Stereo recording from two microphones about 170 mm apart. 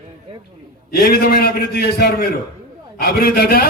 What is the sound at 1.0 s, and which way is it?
A man's voice, 65° left (ahead or behind).